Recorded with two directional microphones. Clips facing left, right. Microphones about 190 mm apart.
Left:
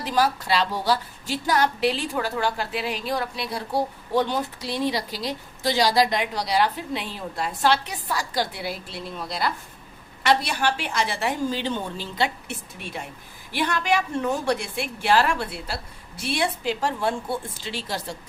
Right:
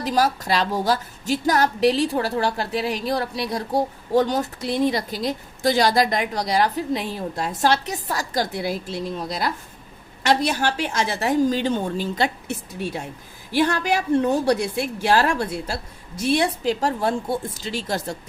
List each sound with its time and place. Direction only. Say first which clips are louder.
0.0 s a woman's voice: right 2 dB; 40° right (ahead or behind)